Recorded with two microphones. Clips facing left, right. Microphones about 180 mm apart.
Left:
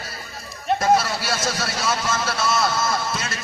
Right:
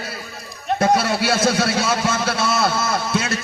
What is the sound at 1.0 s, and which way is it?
A man's voice, 60° right (ahead or behind).